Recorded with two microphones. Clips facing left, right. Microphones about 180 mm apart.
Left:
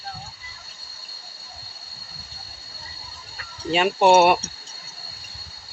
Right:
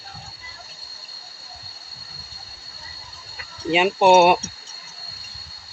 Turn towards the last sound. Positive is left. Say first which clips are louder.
# right 1 dB
turn(degrees=-20)  # may be behind; listen again after turning